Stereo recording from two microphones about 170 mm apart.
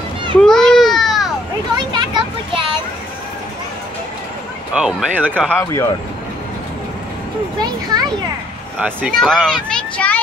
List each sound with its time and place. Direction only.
0.4 s baby cry: 5° left (ahead or behind)
1.9 s children playing: 30° right (ahead or behind)
4.7 s speech: 5° right (ahead or behind)
5.5 s speech: 15° left (ahead or behind)
7.5 s speech: 25° right (ahead or behind)
8.7 s a child's voice: 5° right (ahead or behind)